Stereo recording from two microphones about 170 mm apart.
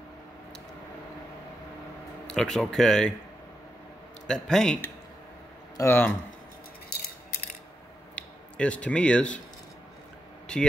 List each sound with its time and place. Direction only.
2.2 s speech: 5° left (ahead or behind)
4.3 s speech: 5° left (ahead or behind)
5.8 s speech: 10° left (ahead or behind)
6.9 s a sound: 65° left (ahead or behind)
8.2 s speech: 5° left (ahead or behind)
10.5 s speech: 5° left (ahead or behind)